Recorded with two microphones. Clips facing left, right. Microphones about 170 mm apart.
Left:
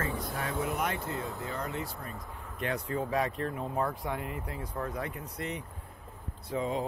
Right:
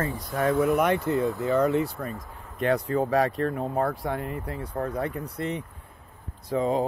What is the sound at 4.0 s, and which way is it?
Speech, 40° right (ahead or behind).